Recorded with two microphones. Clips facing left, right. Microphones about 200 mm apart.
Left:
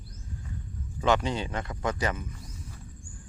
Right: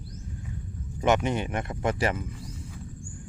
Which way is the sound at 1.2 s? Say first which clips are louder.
Right 3 dB; 20° right (ahead or behind).